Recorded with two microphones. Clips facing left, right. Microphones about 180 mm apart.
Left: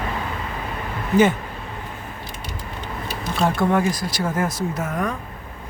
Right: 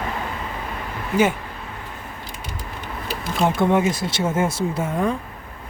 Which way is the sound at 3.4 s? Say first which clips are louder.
Right 1 dB; 20° right (ahead or behind).